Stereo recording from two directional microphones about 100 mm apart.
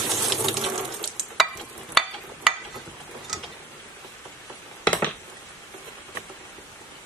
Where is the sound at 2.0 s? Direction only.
Centre (ahead or behind).